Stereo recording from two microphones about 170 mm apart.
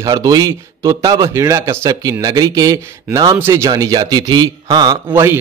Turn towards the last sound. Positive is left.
turn(degrees=-15)  # may be behind; listen again after turning